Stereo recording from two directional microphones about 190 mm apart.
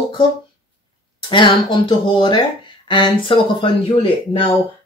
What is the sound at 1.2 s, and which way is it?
Speech, 25° left (ahead or behind).